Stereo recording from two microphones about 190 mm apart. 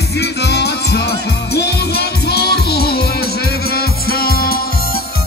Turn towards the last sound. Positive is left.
turn(degrees=55)  # may be behind; listen again after turning